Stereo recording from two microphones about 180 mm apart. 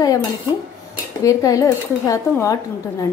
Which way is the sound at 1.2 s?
20° left (ahead or behind).